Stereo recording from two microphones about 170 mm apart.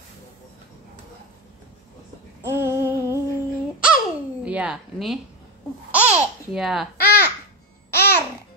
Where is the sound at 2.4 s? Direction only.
15° right (ahead or behind).